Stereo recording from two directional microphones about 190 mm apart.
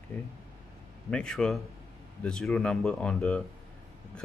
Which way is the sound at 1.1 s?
5° left (ahead or behind).